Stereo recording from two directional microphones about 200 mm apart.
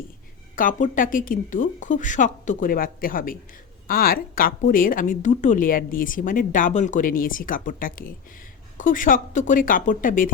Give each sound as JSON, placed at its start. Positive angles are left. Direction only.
{"t": 0.5, "sound": "a woman's voice", "side_deg": 40}